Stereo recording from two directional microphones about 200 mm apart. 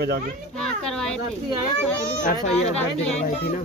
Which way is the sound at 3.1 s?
35° left (ahead or behind).